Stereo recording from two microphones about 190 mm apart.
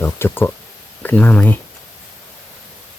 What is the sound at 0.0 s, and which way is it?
Speech, 10° left (ahead or behind).